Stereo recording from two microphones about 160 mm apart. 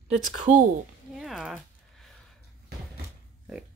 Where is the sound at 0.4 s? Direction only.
55° right (ahead or behind).